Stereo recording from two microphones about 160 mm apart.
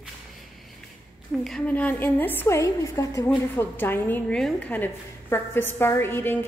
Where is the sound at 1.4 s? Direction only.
5° left (ahead or behind).